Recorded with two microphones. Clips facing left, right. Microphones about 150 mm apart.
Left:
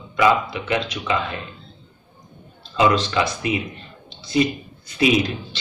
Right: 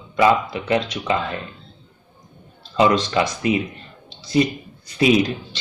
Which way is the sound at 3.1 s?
30° right (ahead or behind).